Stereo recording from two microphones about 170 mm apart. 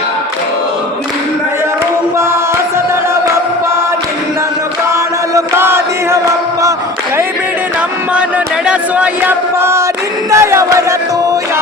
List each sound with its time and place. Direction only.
5.3 s chant: 15° right (ahead or behind)
8.6 s chant: 5° right (ahead or behind)
10.3 s a sound: 15° right (ahead or behind)